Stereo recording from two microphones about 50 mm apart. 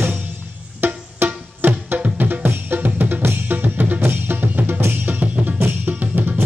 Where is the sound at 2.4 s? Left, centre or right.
Right.